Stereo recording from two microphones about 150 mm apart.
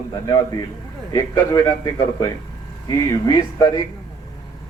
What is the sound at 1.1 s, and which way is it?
Speech, 25° left (ahead or behind).